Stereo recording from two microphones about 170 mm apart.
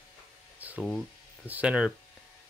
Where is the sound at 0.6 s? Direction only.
10° right (ahead or behind).